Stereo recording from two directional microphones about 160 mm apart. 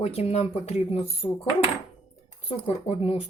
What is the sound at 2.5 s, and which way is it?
Speech, 40° left (ahead or behind).